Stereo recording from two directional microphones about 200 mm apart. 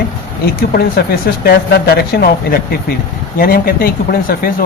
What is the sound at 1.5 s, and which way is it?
Speech, 50° left (ahead or behind).